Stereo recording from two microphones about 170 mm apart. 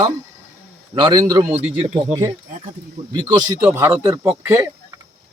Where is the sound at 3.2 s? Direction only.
25° right (ahead or behind).